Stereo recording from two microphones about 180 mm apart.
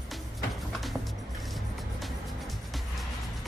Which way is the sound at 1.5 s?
Centre (ahead or behind).